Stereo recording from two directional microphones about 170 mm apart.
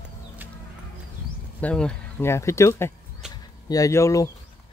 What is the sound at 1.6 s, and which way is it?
Speech, 5° left (ahead or behind).